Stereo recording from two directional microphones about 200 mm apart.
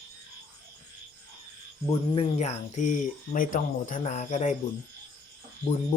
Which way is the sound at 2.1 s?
30° left (ahead or behind).